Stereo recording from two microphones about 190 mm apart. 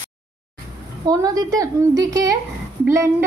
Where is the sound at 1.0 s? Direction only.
20° right (ahead or behind).